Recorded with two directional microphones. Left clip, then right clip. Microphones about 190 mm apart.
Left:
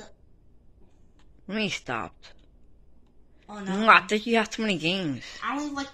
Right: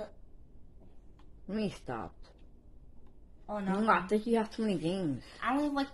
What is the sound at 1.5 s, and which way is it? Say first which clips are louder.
Speech: left 8 dB; 15° left (ahead or behind).